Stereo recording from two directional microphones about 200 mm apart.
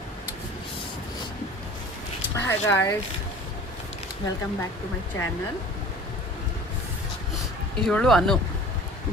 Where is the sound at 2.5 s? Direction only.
15° left (ahead or behind).